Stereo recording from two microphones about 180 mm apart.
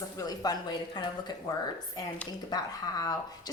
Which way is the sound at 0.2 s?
20° left (ahead or behind).